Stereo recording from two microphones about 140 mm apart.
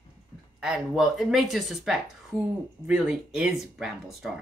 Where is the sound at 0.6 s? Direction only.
5° right (ahead or behind).